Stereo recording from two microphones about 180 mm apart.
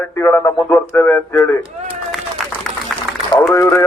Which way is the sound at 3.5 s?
15° left (ahead or behind).